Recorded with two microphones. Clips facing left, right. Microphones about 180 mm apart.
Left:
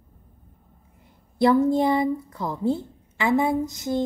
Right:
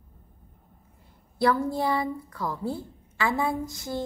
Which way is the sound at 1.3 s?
20° left (ahead or behind).